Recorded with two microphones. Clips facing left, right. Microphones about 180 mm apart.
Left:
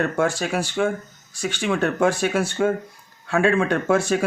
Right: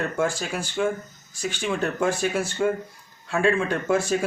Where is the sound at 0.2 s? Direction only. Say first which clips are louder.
Left 4 dB; 70° left (ahead or behind).